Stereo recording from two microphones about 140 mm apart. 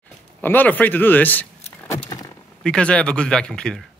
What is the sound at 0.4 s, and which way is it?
Speech, 15° left (ahead or behind).